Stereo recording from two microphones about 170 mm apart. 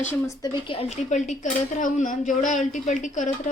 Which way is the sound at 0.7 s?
35° left (ahead or behind).